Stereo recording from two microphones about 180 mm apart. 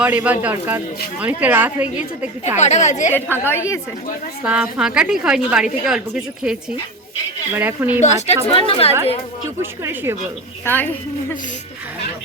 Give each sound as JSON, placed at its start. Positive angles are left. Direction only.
{"t": 0.0, "sound": "a woman's voice", "side_deg": -10}
{"t": 2.6, "sound": "a woman's voice", "side_deg": 40}
{"t": 3.3, "sound": "a woman's voice", "side_deg": 10}
{"t": 4.4, "sound": "a woman's voice", "side_deg": -5}
{"t": 7.5, "sound": "a woman's voice", "side_deg": -10}
{"t": 8.0, "sound": "a woman's voice", "side_deg": 40}
{"t": 9.6, "sound": "a woman's voice", "side_deg": -15}
{"t": 10.7, "sound": "a woman's voice", "side_deg": 10}